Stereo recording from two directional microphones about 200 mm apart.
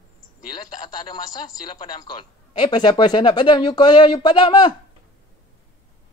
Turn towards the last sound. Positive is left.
turn(degrees=20)  # may be behind; listen again after turning